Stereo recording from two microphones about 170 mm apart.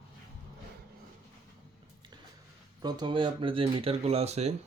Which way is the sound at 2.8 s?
25° right (ahead or behind).